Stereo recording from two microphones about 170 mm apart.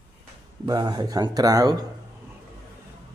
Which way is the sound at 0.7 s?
25° right (ahead or behind).